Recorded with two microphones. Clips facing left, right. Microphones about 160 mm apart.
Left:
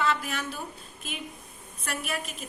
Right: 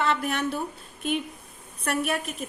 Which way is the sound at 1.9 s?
55° right (ahead or behind).